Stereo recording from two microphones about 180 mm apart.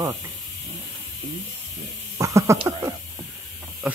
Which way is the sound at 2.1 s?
15° right (ahead or behind).